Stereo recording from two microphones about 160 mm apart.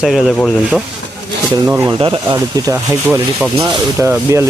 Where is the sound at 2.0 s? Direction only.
25° right (ahead or behind).